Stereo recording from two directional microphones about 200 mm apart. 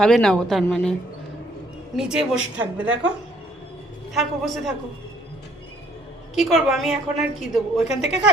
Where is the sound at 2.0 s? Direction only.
5° right (ahead or behind).